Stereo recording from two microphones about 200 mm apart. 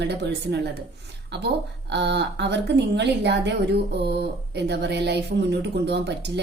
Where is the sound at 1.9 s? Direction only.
60° right (ahead or behind).